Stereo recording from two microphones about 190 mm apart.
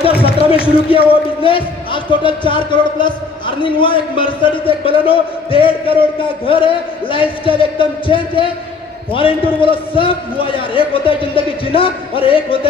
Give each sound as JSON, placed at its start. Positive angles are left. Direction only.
{"t": 0.2, "sound": "speech", "side_deg": 30}
{"t": 9.1, "sound": "speech", "side_deg": 30}